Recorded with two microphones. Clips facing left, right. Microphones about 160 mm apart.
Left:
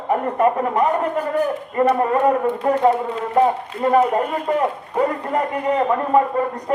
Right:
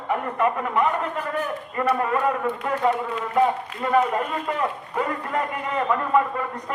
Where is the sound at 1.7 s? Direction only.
25° left (ahead or behind).